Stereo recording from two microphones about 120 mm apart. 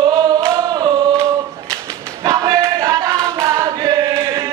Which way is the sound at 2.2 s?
25° right (ahead or behind).